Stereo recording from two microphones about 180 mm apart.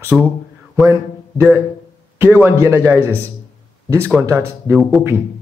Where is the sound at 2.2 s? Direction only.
10° right (ahead or behind).